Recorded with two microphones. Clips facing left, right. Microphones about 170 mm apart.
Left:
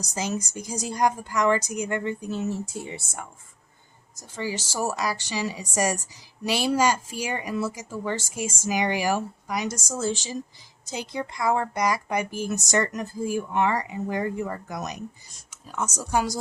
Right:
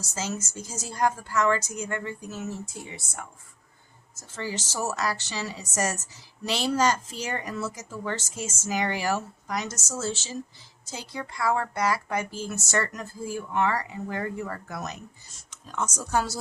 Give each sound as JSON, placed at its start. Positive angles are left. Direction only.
{"t": 0.0, "sound": "a woman's voice", "side_deg": 15}
{"t": 4.2, "sound": "a woman's voice", "side_deg": 10}